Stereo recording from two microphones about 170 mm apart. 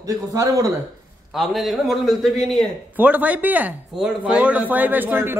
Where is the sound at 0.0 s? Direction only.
20° right (ahead or behind).